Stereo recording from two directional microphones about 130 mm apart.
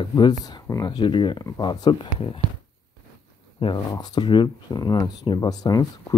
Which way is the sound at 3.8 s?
30° left (ahead or behind).